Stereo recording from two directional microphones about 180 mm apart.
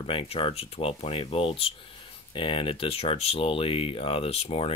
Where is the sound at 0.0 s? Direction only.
30° left (ahead or behind).